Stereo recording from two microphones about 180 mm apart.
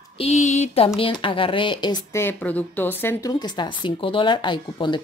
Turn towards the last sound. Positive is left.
turn(degrees=25)  # may be behind; listen again after turning